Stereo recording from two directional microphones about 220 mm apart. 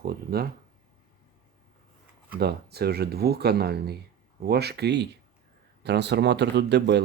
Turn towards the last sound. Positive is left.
turn(degrees=-50)  # may be behind; listen again after turning